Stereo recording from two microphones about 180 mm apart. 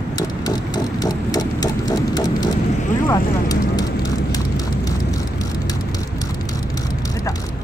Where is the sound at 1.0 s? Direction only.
20° left (ahead or behind).